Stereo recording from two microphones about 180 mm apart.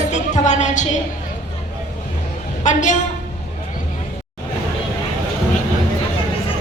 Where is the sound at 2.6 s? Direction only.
45° left (ahead or behind).